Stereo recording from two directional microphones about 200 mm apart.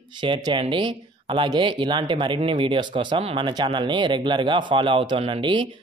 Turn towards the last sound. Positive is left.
turn(degrees=-25)  # may be behind; listen again after turning